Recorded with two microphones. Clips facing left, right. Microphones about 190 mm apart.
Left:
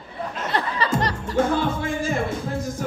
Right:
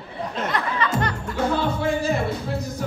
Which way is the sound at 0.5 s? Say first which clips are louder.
Left 2 dB; 35° left (ahead or behind).